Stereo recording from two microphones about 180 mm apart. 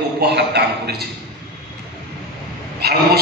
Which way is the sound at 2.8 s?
60° right (ahead or behind).